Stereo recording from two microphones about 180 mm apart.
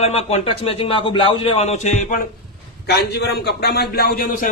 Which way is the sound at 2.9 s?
65° left (ahead or behind).